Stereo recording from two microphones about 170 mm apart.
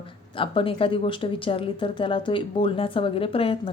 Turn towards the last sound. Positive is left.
turn(degrees=35)  # may be behind; listen again after turning